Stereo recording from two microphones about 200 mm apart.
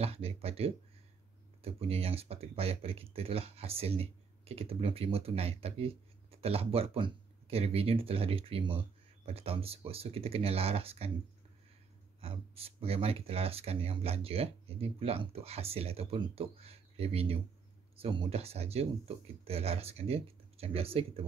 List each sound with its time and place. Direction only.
0.0 s speech: 30° right (ahead or behind)
12.2 s speech: 30° right (ahead or behind)